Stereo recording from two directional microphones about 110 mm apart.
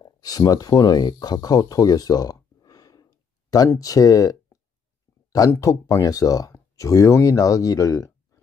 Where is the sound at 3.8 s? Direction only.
35° left (ahead or behind).